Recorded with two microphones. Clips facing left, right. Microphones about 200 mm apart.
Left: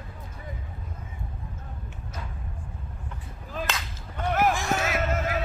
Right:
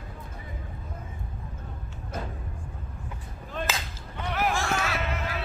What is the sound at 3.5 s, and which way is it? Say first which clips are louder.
Chop: even; centre (ahead or behind).